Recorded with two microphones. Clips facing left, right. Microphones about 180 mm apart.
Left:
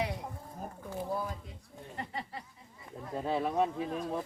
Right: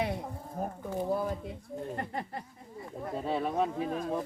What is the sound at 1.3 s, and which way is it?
Speech, 50° right (ahead or behind).